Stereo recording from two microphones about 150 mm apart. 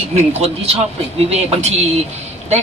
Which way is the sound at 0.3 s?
45° right (ahead or behind).